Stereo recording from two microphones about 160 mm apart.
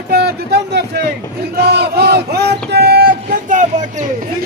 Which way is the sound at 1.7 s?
90° right.